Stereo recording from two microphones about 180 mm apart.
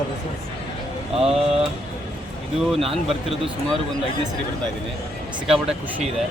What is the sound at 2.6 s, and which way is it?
Speech, centre (ahead or behind).